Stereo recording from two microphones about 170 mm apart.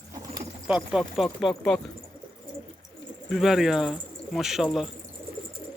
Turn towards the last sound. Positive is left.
turn(degrees=0)  # may be behind; listen again after turning